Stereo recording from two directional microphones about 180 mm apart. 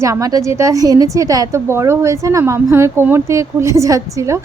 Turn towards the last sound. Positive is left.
turn(degrees=-15)  # may be behind; listen again after turning